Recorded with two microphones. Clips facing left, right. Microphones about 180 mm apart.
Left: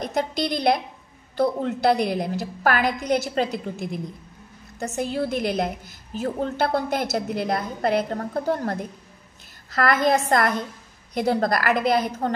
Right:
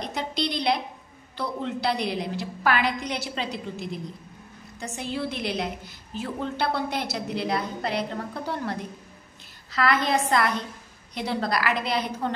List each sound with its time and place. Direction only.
0.0 s a woman's voice: 45° left (ahead or behind)